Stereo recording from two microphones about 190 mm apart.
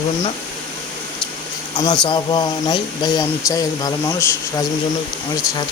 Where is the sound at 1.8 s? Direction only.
25° left (ahead or behind).